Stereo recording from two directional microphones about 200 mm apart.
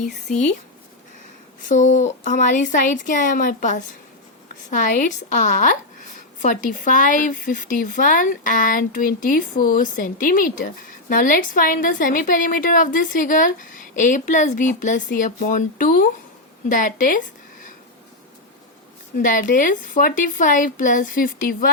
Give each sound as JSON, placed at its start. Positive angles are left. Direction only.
{"t": 0.0, "sound": "a woman's voice", "side_deg": 35}
{"t": 1.6, "sound": "a woman's voice", "side_deg": 40}
{"t": 19.2, "sound": "a woman's voice", "side_deg": 40}